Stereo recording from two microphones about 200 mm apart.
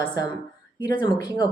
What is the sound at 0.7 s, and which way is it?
Speech, 25° left (ahead or behind).